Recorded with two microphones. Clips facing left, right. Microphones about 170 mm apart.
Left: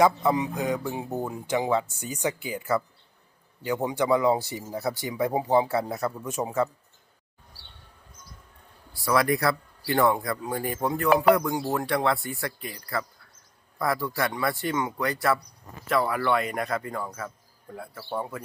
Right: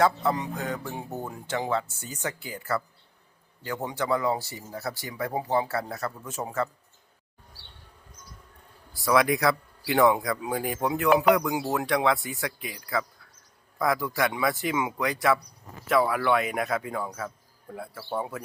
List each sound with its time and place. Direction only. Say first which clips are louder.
0.0 s speech: left 3 dB; 15° left (ahead or behind)
9.0 s speech: right 1 dB; centre (ahead or behind)